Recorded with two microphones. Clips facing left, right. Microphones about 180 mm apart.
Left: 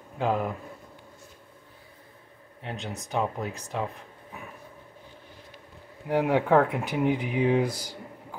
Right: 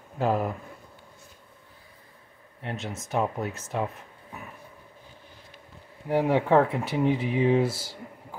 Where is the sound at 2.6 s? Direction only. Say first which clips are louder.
Right 1 dB; centre (ahead or behind).